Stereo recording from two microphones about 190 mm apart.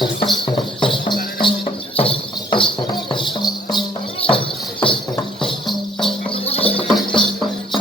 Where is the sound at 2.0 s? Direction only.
30° left (ahead or behind).